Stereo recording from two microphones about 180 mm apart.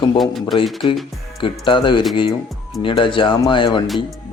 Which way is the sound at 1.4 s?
30° left (ahead or behind).